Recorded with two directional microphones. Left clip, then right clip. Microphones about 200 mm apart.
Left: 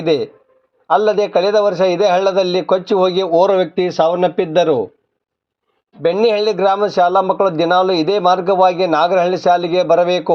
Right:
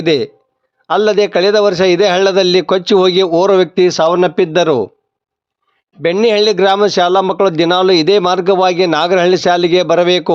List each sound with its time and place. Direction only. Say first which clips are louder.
0.0 s a man's voice: right 3 dB; 35° right (ahead or behind)
6.1 s a man's voice: right 3 dB; 40° right (ahead or behind)